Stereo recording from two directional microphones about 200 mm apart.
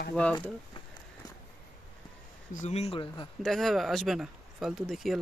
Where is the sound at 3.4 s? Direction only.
Centre (ahead or behind).